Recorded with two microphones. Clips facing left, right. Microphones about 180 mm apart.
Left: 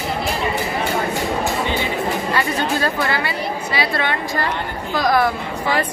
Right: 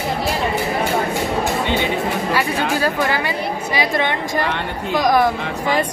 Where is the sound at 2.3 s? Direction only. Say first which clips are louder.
Right 1 dB; 10° right (ahead or behind).